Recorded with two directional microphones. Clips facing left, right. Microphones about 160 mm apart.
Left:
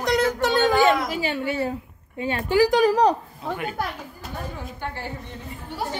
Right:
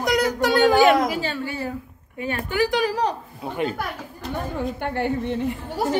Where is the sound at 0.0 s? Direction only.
15° right (ahead or behind).